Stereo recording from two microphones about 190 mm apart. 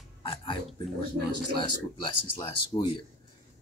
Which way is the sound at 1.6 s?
25° left (ahead or behind).